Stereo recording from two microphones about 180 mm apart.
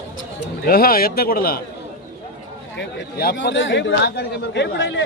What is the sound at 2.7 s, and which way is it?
Speech, 65° left (ahead or behind).